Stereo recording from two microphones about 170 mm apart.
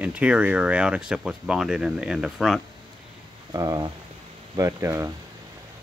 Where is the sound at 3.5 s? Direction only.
20° right (ahead or behind).